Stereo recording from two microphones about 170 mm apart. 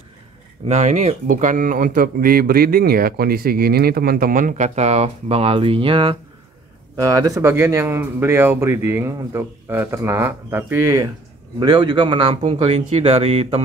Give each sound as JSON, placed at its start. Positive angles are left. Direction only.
{"t": 0.7, "sound": "speech", "side_deg": -45}
{"t": 7.0, "sound": "speech", "side_deg": -20}